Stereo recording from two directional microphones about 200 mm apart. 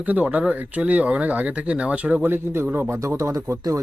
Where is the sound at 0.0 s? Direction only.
10° right (ahead or behind).